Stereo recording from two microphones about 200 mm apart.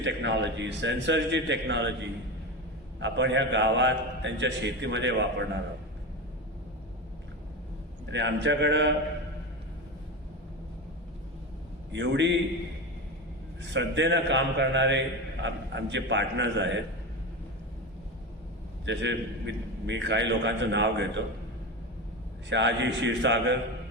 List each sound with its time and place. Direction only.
0.0 s a man's voice: 65° right (ahead or behind)
3.0 s a man's voice: 60° right (ahead or behind)
8.0 s a man's voice: 65° right (ahead or behind)
11.9 s a man's voice: 65° right (ahead or behind)
13.6 s a man's voice: 65° right (ahead or behind)
18.9 s a man's voice: 65° right (ahead or behind)
22.4 s a man's voice: 65° right (ahead or behind)